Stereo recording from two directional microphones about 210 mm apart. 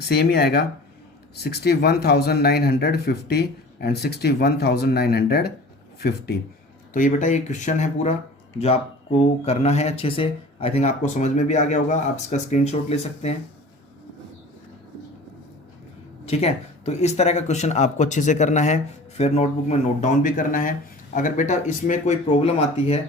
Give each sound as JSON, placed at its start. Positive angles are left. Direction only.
{"t": 0.0, "sound": "speech", "side_deg": 50}
{"t": 6.9, "sound": "speech", "side_deg": 40}
{"t": 16.2, "sound": "speech", "side_deg": 30}